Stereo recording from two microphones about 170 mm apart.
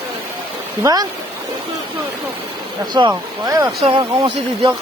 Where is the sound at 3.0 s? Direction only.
25° right (ahead or behind).